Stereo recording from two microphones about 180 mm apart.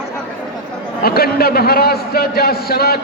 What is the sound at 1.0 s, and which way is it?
A man's voice, 60° left (ahead or behind).